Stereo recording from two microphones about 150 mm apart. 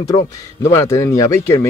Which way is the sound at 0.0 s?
20° left (ahead or behind).